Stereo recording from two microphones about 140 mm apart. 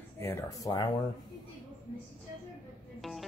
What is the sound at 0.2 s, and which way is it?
Speech, 25° left (ahead or behind).